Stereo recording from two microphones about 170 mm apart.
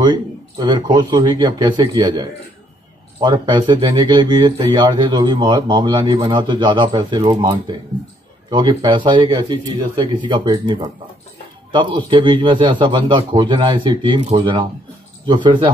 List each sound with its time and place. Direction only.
0.6 s speech: 25° right (ahead or behind)